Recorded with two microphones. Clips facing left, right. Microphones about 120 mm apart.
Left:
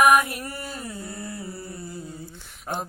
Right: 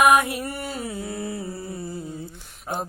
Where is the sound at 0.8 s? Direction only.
70° right (ahead or behind).